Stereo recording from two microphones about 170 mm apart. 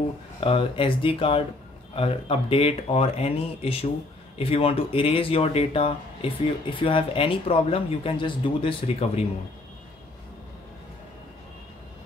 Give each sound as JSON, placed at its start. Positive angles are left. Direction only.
{"t": 0.4, "sound": "speech", "side_deg": 30}